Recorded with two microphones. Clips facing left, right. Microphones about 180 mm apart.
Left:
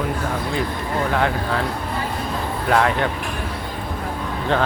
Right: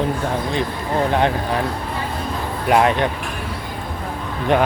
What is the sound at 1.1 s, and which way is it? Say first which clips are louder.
Vehicle: right 1 dB; 20° right (ahead or behind).